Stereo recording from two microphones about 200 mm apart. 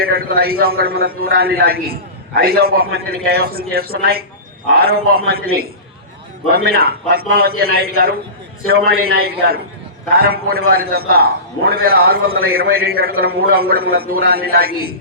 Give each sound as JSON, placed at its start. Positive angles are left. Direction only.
{"t": 0.0, "sound": "a man's voice", "side_deg": -50}